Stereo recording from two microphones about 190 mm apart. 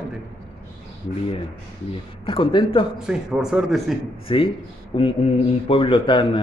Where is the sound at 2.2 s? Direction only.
25° left (ahead or behind).